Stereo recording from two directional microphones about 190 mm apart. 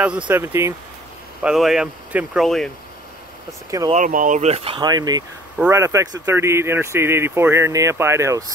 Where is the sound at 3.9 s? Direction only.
45° right (ahead or behind).